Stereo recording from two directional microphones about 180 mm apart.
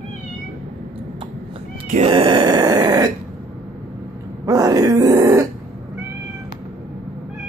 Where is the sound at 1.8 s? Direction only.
45° right (ahead or behind).